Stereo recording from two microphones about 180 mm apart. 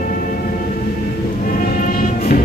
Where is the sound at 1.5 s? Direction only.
50° left (ahead or behind).